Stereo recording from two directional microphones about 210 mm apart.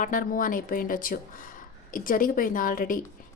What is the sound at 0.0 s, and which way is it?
Speech, 40° left (ahead or behind).